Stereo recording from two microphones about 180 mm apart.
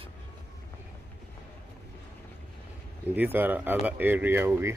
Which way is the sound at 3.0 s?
10° right (ahead or behind).